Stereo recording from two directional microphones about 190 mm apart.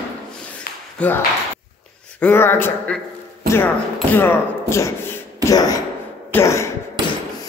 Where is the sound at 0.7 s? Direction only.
50° left (ahead or behind).